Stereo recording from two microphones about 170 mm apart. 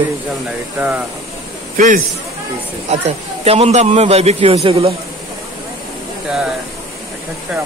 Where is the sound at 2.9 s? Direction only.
40° right (ahead or behind).